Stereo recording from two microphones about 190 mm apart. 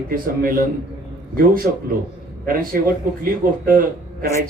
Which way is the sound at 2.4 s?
50° right (ahead or behind).